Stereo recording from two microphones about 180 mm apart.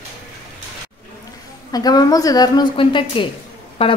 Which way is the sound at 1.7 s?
20° left (ahead or behind).